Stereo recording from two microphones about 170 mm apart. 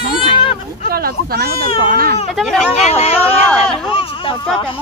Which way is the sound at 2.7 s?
35° left (ahead or behind).